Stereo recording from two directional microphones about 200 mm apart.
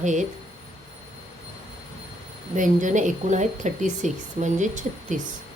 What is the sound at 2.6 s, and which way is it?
Speech, 40° right (ahead or behind).